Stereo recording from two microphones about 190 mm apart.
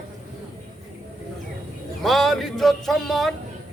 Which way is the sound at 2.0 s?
Centre (ahead or behind).